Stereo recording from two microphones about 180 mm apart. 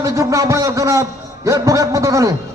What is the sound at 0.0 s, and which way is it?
A man's voice, 15° right (ahead or behind).